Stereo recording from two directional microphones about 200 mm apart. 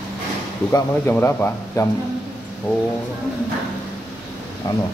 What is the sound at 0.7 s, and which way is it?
Speech, 10° left (ahead or behind).